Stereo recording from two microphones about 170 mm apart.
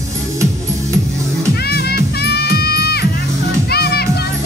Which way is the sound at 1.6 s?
70° left (ahead or behind).